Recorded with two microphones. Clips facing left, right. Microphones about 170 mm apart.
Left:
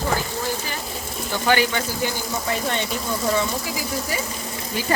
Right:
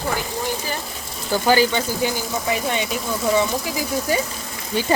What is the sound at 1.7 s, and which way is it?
Speech, 15° right (ahead or behind).